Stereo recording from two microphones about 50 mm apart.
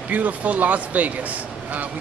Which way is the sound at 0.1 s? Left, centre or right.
Right.